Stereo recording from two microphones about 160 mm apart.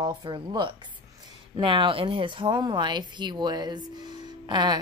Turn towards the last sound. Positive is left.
turn(degrees=-30)  # may be behind; listen again after turning